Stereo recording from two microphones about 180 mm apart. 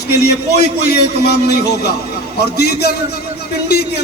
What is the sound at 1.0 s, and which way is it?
A man's voice, 65° left (ahead or behind).